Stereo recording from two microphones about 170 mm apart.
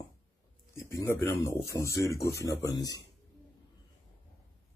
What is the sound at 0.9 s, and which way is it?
Speech, 15° left (ahead or behind).